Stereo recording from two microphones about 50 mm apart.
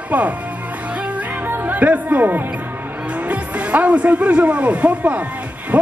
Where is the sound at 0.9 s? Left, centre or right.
Right.